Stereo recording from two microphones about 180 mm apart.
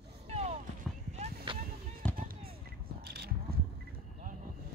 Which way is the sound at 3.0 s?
60° right (ahead or behind).